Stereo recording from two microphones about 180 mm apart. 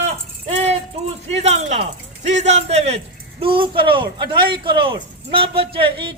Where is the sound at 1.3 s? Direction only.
40° right (ahead or behind).